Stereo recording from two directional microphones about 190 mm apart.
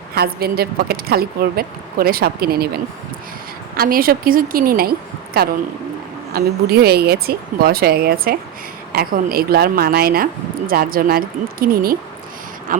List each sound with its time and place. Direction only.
0.1 s speech: 55° right (ahead or behind)
3.8 s speech: 50° right (ahead or behind)